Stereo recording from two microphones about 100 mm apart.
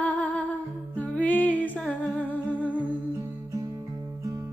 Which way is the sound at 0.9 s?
15° left (ahead or behind).